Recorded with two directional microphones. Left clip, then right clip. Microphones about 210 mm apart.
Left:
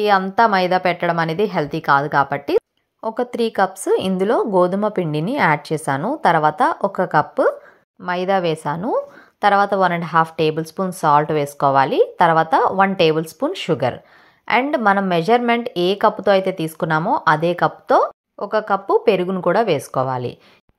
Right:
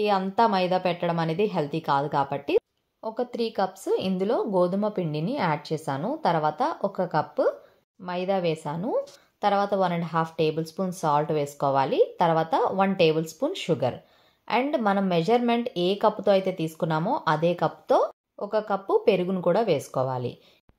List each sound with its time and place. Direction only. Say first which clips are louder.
0.0 s speech: left 8 dB; 20° left (ahead or behind)
3.0 s a woman's voice: left 8 dB; 30° left (ahead or behind)